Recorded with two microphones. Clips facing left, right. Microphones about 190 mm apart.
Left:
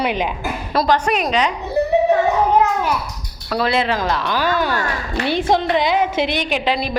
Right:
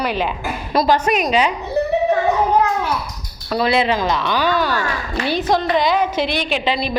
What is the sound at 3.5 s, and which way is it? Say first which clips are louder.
Speech: right 2 dB; centre (ahead or behind).